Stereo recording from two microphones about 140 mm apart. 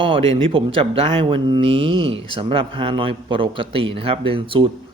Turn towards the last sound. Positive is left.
turn(degrees=-40)  # may be behind; listen again after turning